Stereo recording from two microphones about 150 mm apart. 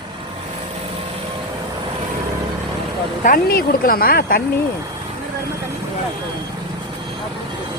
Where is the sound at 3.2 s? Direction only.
75° left (ahead or behind); by 4.4 s 90° left.